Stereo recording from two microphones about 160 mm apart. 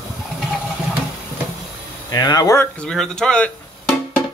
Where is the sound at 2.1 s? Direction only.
25° left (ahead or behind).